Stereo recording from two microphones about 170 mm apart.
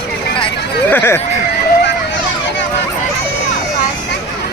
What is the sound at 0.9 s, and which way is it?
Speech, 10° left (ahead or behind).